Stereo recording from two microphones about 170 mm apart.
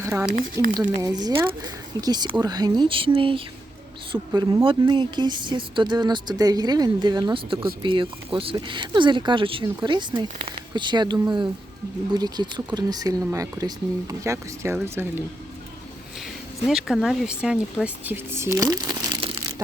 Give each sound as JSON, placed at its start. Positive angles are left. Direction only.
{"t": 0.0, "sound": "speech", "side_deg": -15}
{"t": 0.3, "sound": "speech", "side_deg": -55}
{"t": 1.0, "sound": "speech", "side_deg": -25}
{"t": 4.3, "sound": "speech", "side_deg": -20}
{"t": 16.6, "sound": "speech", "side_deg": 0}